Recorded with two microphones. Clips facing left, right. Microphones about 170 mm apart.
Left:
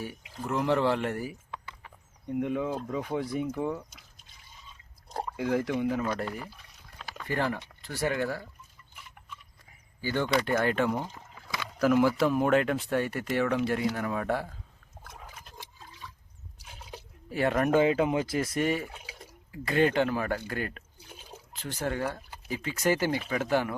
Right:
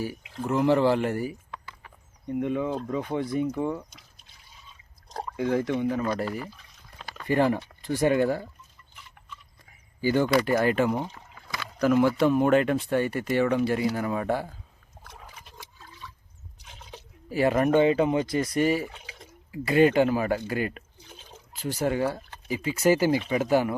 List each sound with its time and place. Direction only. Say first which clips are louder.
0.0 s speech: right 5 dB; centre (ahead or behind)
1.5 s a sound: even; 20° left (ahead or behind)
2.2 s speech: right 2 dB; 5° left (ahead or behind)
5.0 s speech: right 3 dB; 5° left (ahead or behind)
7.2 s speech: right 7 dB; 15° right (ahead or behind)
10.0 s speech: right 5 dB; 10° right (ahead or behind)
15.0 s a sound: even; centre (ahead or behind)
16.6 s a sound: even; 5° left (ahead or behind)
17.2 s speech: right 4 dB; 5° right (ahead or behind)
19.5 s speech: right 5 dB; 10° right (ahead or behind)
21.0 s liquid: even; 10° left (ahead or behind)
21.5 s speech: right 6 dB; 10° right (ahead or behind)